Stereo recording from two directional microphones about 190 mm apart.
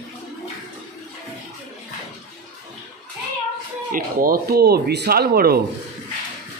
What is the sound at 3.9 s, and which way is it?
Speech, 50° right (ahead or behind).